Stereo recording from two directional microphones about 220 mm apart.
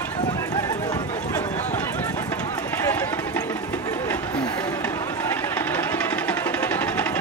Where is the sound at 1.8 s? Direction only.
10° left (ahead or behind).